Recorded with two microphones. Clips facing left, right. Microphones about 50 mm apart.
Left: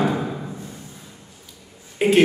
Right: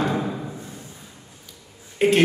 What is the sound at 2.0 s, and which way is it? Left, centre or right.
Speech, centre.